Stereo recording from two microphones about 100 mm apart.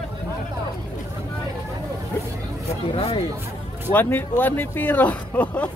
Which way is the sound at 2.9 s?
75° left (ahead or behind).